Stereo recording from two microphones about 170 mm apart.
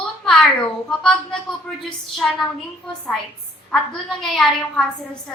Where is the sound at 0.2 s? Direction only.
Centre (ahead or behind).